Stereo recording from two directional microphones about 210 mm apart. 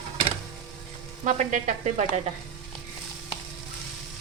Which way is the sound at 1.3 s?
35° right (ahead or behind).